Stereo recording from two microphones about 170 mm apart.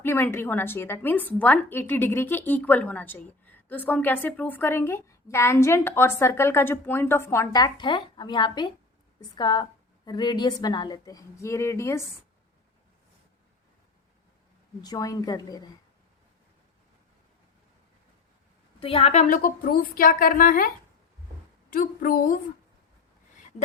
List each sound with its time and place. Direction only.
0.0 s a woman's voice: 15° left (ahead or behind)
14.8 s a woman's voice: 20° left (ahead or behind)
18.8 s a woman's voice: 35° left (ahead or behind); by 20.7 s 55° left (ahead or behind)
21.7 s a woman's voice: 55° left (ahead or behind)